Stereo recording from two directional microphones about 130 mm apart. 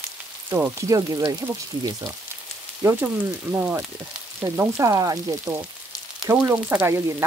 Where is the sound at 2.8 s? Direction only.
20° right (ahead or behind).